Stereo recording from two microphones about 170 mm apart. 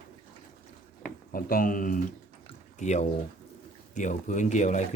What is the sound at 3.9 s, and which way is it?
Speech, 45° left (ahead or behind).